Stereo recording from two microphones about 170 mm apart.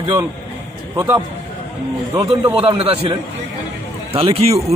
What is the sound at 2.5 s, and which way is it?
Speech, 35° right (ahead or behind).